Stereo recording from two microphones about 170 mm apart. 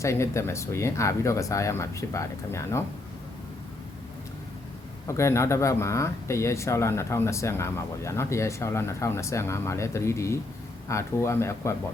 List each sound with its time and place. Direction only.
0.0 s speech: 15° left (ahead or behind)
5.0 s speech: 15° left (ahead or behind)